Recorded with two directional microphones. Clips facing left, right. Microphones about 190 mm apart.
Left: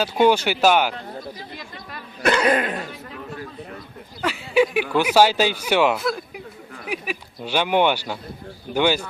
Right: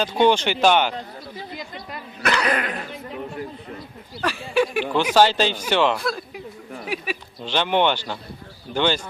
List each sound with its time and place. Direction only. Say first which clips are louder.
0.0 s speech: left 1 dB; 5° left (ahead or behind)
2.2 s cough: left 4 dB; 25° left (ahead or behind)
4.2 s speech: left 2 dB; 5° left (ahead or behind)